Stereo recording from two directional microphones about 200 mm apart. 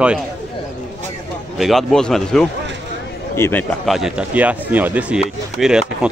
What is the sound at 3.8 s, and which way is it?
Speech, centre (ahead or behind).